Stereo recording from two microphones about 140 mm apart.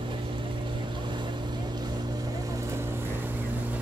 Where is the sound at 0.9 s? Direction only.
35° right (ahead or behind).